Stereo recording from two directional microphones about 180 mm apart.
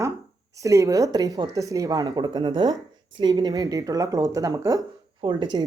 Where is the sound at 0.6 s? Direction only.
15° right (ahead or behind).